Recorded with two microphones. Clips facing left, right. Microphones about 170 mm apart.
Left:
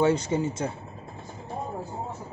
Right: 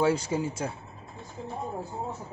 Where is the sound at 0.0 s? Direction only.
5° right (ahead or behind).